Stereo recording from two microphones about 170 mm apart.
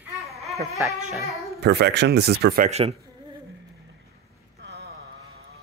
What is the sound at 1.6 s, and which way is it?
Speech, 75° right (ahead or behind).